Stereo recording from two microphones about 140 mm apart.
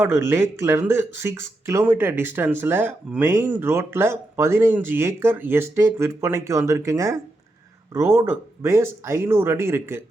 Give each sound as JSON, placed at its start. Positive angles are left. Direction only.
{"t": 0.0, "sound": "speech", "side_deg": -20}